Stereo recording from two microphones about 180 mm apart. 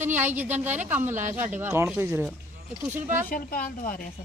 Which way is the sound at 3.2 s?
55° left (ahead or behind).